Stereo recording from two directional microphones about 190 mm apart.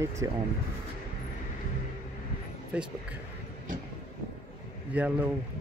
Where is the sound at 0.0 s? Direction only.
15° right (ahead or behind).